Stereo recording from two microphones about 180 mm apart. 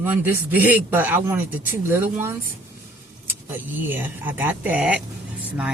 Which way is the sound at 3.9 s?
10° right (ahead or behind).